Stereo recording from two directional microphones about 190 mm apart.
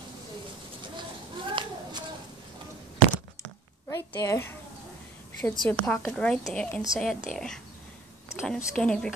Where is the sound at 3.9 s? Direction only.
15° left (ahead or behind).